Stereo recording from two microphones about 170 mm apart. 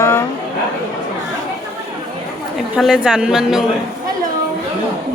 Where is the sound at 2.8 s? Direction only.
5° right (ahead or behind).